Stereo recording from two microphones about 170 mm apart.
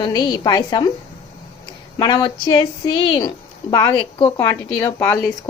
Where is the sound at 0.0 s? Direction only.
25° left (ahead or behind).